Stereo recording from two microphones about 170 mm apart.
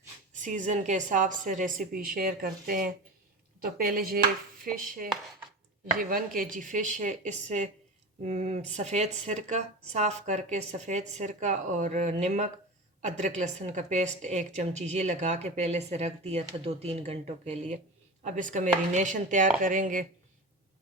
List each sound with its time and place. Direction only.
0.3 s a woman's voice: 45° right (ahead or behind)